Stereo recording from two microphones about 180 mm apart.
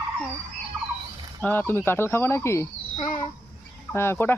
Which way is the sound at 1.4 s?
10° left (ahead or behind).